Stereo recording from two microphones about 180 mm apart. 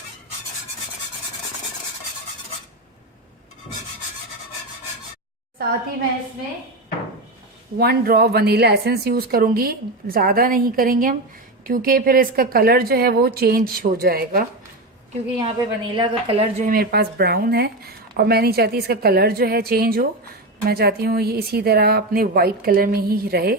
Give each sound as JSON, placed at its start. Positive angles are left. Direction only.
{"t": 7.8, "sound": "speech", "side_deg": -60}
{"t": 15.4, "sound": "a woman's voice", "side_deg": -30}
{"t": 16.6, "sound": "speech", "side_deg": -55}